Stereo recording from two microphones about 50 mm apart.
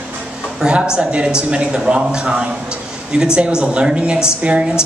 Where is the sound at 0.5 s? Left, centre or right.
Centre.